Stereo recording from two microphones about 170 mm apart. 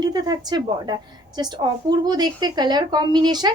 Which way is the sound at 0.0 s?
25° right (ahead or behind).